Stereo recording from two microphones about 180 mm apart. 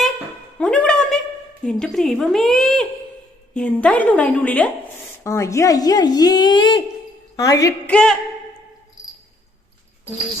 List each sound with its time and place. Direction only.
0.6 s a sound: 5° left (ahead or behind)
1.6 s a woman's voice: 5° left (ahead or behind); by 7.7 s 20° left (ahead or behind)
7.9 s speech: 5° left (ahead or behind)